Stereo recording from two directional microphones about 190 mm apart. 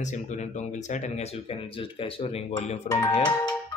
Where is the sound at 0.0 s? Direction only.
40° left (ahead or behind).